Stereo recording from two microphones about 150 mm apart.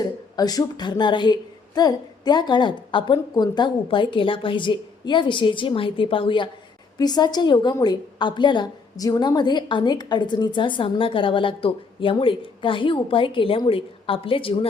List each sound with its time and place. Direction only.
0.0 s a woman's voice: 25° left (ahead or behind)